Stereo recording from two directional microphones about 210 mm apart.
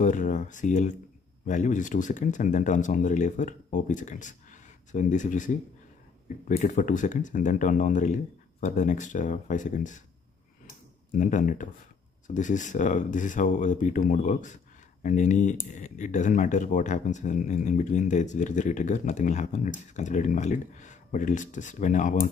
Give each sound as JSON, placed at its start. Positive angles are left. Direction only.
{"t": 0.0, "sound": "speech", "side_deg": 35}
{"t": 6.5, "sound": "speech", "side_deg": 40}
{"t": 11.1, "sound": "speech", "side_deg": 35}